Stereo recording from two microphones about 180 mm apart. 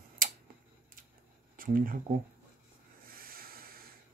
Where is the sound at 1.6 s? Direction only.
50° right (ahead or behind).